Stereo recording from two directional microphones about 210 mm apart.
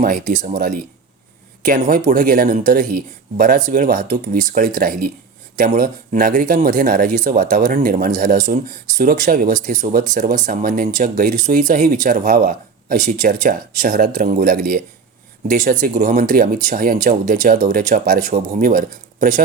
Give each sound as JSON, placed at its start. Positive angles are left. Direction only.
{"t": 0.0, "sound": "speech", "side_deg": -45}